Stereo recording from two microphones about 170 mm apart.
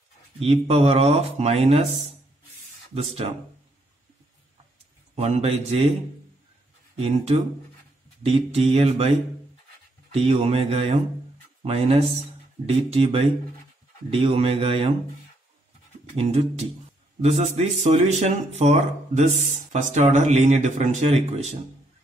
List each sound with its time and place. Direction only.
0.4 s speech: 35° right (ahead or behind)
5.1 s speech: 35° right (ahead or behind)
8.2 s speech: 35° right (ahead or behind)
10.1 s speech: 35° right (ahead or behind)
16.2 s speech: 40° right (ahead or behind)